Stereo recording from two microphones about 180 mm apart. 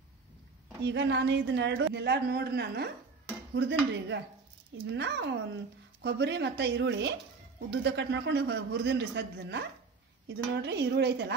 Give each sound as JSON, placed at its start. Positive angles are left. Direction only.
{"t": 0.8, "sound": "a woman's voice", "side_deg": -75}
{"t": 3.5, "sound": "a woman's voice", "side_deg": -75}